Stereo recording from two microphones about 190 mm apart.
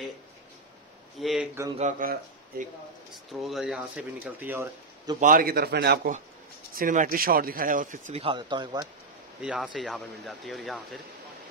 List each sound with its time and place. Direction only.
1.2 s speech: centre (ahead or behind)
1.8 s speech: 45° right (ahead or behind)
3.4 s speech: centre (ahead or behind)
5.2 s speech: 50° right (ahead or behind)
6.7 s speech: 45° right (ahead or behind)
8.2 s speech: 25° right (ahead or behind)
9.4 s speech: 5° right (ahead or behind)